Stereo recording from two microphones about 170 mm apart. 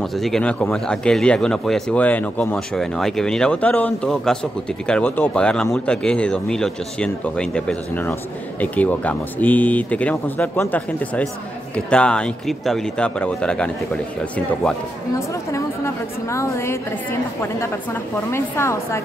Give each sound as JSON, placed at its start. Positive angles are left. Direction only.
{"t": 0.0, "sound": "speech", "side_deg": 0}
{"t": 15.1, "sound": "a woman's voice", "side_deg": 15}
{"t": 18.3, "sound": "a woman's voice", "side_deg": 15}